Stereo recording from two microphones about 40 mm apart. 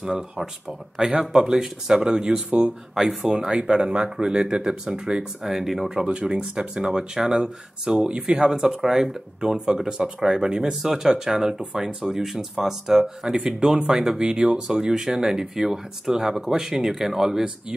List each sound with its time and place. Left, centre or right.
0.0 s speech: centre
2.9 s speech: centre
3.3 s speech: right; by 5.9 s centre
6.2 s speech: centre